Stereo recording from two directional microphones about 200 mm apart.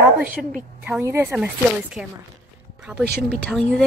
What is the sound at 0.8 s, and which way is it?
Speech, 10° right (ahead or behind).